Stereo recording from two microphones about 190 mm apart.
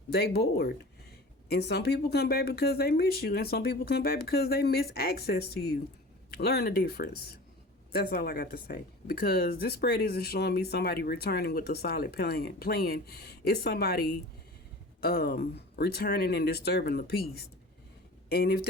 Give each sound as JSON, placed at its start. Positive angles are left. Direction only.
{"t": 0.1, "sound": "speech", "side_deg": 55}
{"t": 18.3, "sound": "speech", "side_deg": 55}